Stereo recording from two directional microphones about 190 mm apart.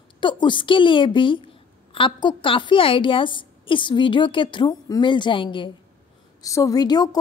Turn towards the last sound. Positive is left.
turn(degrees=20)  # may be behind; listen again after turning